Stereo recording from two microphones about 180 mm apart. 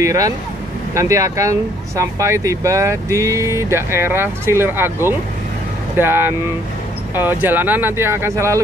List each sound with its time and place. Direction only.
0.0 s speech: 20° right (ahead or behind)